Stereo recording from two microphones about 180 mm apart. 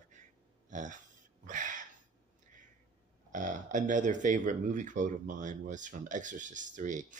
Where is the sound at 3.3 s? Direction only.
45° right (ahead or behind).